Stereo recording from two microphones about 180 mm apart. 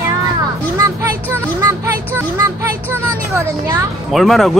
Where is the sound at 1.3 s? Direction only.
15° right (ahead or behind).